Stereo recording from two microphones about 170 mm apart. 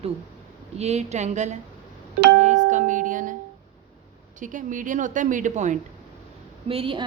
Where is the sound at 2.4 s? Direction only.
45° right (ahead or behind).